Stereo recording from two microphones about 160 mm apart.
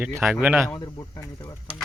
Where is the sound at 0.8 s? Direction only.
25° left (ahead or behind).